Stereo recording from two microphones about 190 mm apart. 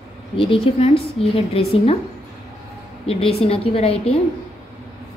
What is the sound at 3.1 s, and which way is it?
A woman's voice, 30° left (ahead or behind).